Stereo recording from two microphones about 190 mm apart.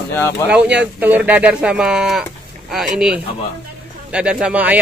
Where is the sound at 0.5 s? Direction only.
5° right (ahead or behind).